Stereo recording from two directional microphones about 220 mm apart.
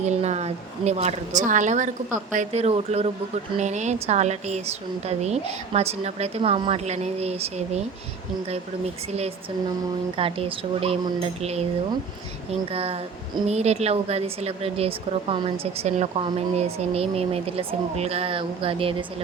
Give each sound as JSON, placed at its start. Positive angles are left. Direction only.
{"t": 0.0, "sound": "a woman's voice", "side_deg": -30}
{"t": 10.2, "sound": "a woman's voice", "side_deg": -25}